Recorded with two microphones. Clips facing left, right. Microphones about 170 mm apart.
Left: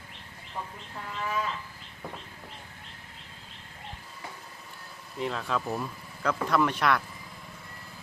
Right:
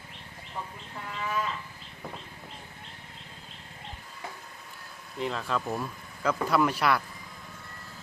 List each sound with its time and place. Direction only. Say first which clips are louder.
1.0 s livestock: even; centre (ahead or behind)
5.1 s speech: even; centre (ahead or behind)